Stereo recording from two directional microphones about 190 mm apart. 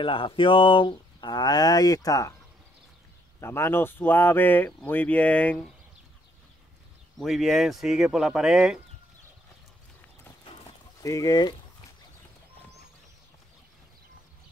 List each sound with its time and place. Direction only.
0.0 s speech: 25° left (ahead or behind)
3.3 s speech: 15° left (ahead or behind)
7.2 s speech: centre (ahead or behind)
10.4 s livestock: 20° left (ahead or behind)